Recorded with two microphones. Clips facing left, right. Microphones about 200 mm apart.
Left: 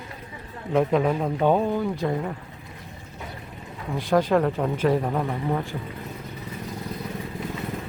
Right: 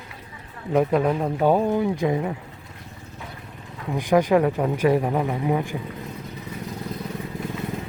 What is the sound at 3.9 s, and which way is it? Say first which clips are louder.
Speech: right 2 dB; 15° right (ahead or behind).